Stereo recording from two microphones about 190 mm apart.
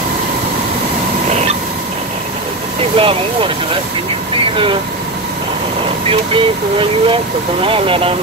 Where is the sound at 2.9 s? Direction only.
30° right (ahead or behind).